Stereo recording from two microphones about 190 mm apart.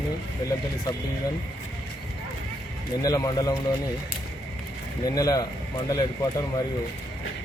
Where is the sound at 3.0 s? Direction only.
20° left (ahead or behind).